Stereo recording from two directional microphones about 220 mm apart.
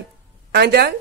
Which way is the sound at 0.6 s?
45° right (ahead or behind).